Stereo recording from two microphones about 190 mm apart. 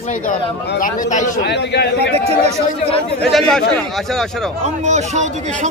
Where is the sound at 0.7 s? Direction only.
45° left (ahead or behind).